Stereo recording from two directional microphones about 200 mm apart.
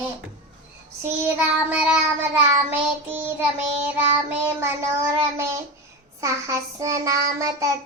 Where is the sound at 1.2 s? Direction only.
10° right (ahead or behind).